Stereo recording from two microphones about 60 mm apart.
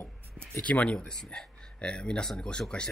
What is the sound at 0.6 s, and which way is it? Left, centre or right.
Speech, left.